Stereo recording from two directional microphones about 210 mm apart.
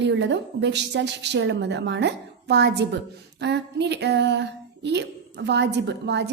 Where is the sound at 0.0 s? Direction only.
55° right (ahead or behind).